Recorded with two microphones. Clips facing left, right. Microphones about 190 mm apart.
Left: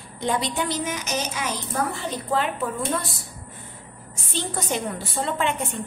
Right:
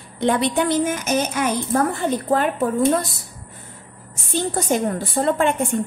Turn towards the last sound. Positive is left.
turn(degrees=-45)  # may be behind; listen again after turning